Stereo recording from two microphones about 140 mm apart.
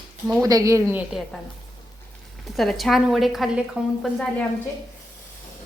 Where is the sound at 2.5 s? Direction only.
Centre (ahead or behind).